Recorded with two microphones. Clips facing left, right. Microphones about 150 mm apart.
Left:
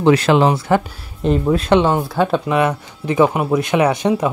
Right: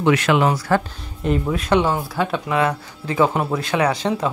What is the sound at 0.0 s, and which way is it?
Speech, 35° left (ahead or behind).